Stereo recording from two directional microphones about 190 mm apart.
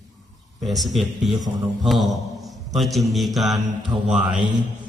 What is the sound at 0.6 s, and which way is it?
A man's voice, centre (ahead or behind).